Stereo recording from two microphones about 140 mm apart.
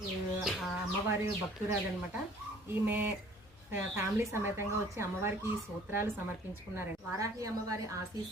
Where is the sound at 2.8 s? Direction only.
15° right (ahead or behind).